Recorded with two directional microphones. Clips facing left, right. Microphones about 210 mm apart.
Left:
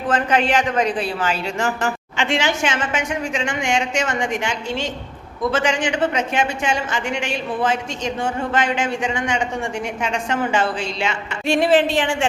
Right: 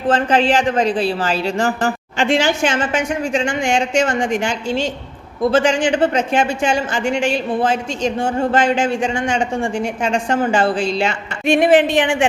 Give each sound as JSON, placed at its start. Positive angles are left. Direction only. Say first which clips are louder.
{"t": 0.1, "sound": "speech", "louder": "right 4 dB", "side_deg": -30}
{"t": 11.4, "sound": "a woman's voice", "louder": "right 4 dB", "side_deg": -15}